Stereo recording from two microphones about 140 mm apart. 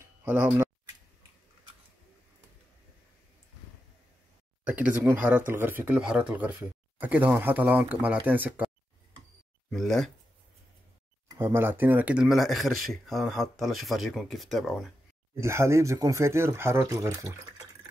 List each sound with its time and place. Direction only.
0.2 s speech: 15° right (ahead or behind)
4.6 s speech: 10° right (ahead or behind)
9.7 s speech: centre (ahead or behind)
11.2 s speech: 20° right (ahead or behind); by 14.9 s centre (ahead or behind)
15.4 s speech: 20° right (ahead or behind)